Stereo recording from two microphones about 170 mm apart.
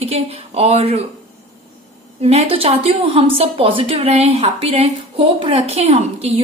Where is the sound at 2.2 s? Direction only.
35° right (ahead or behind).